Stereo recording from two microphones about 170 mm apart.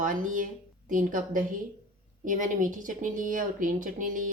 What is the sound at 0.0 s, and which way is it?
A woman's voice, 50° right (ahead or behind).